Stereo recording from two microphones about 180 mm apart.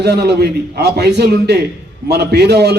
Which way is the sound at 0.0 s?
65° right (ahead or behind).